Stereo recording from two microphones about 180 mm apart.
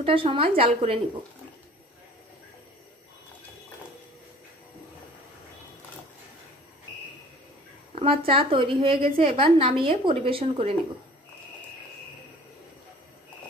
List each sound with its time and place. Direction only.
0.0 s a woman's voice: 30° right (ahead or behind)
8.3 s a woman's voice: 30° right (ahead or behind)